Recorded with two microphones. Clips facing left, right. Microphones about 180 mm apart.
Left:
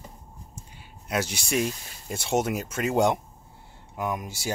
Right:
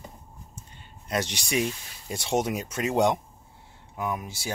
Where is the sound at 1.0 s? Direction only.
5° left (ahead or behind).